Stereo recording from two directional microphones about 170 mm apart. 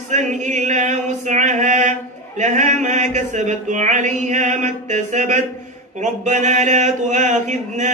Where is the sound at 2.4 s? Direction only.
45° right (ahead or behind).